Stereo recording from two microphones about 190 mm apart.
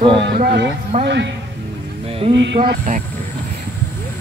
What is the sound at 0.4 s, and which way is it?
Speech, 60° right (ahead or behind).